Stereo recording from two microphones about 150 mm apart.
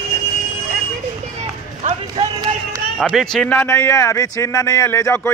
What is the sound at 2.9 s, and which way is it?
A man's voice, centre (ahead or behind).